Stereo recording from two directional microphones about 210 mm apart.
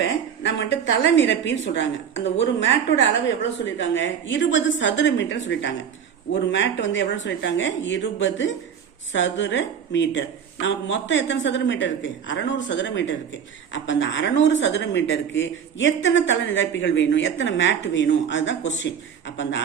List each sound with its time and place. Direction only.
0.0 s a woman's voice: 60° left (ahead or behind)
3.8 s speech: 60° left (ahead or behind)